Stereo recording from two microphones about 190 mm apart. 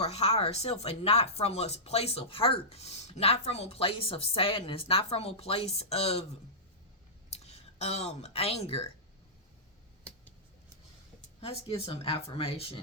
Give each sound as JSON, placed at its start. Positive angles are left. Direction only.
{"t": 0.0, "sound": "speech", "side_deg": 35}
{"t": 7.3, "sound": "speech", "side_deg": 35}
{"t": 11.3, "sound": "speech", "side_deg": 30}